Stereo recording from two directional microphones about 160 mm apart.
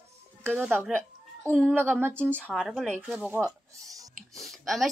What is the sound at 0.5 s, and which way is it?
Speech, 10° right (ahead or behind).